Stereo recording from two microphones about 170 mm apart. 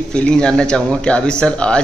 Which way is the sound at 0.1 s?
5° left (ahead or behind).